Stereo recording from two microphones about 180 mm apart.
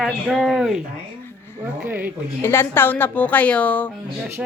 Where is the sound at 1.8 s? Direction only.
10° right (ahead or behind).